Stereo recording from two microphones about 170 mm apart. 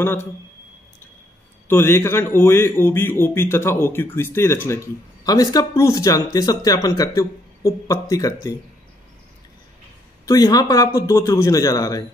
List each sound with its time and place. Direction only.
0.0 s speech: 15° left (ahead or behind)
1.7 s speech: 15° left (ahead or behind)
10.2 s speech: 20° left (ahead or behind)